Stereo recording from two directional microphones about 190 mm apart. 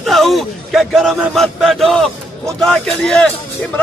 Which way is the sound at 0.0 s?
Centre (ahead or behind).